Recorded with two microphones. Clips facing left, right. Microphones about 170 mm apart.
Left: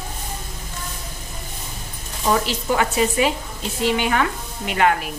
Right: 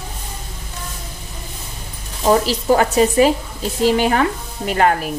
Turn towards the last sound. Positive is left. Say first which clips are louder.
# right 3 dB
turn(degrees=-40)  # may be behind; listen again after turning